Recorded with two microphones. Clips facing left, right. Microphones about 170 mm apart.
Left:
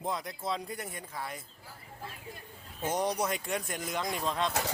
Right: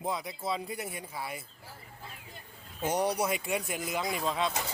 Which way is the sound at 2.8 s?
10° right (ahead or behind).